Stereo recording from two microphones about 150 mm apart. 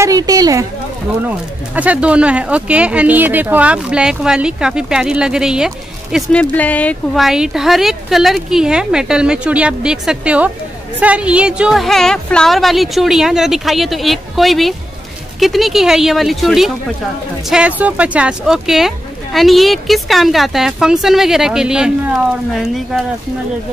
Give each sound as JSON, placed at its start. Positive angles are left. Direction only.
{"t": 0.0, "sound": "a woman's voice", "side_deg": -25}
{"t": 1.8, "sound": "speech", "side_deg": -10}
{"t": 6.3, "sound": "speech", "side_deg": 10}
{"t": 7.2, "sound": "speech", "side_deg": -5}